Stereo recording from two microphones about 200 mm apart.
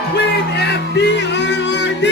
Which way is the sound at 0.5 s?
55° left (ahead or behind).